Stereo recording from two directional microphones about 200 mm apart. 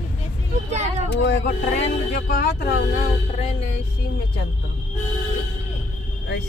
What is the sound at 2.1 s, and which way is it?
Speech, 50° left (ahead or behind).